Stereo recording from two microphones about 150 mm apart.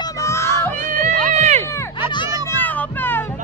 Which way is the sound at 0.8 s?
60° right (ahead or behind).